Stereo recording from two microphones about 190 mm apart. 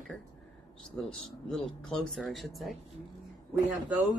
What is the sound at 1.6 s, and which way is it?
Speech, 5° left (ahead or behind).